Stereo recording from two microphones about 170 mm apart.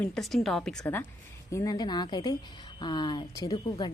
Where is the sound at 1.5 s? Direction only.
20° left (ahead or behind).